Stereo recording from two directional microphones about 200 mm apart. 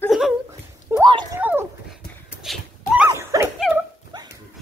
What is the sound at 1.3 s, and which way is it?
Dog, 10° right (ahead or behind).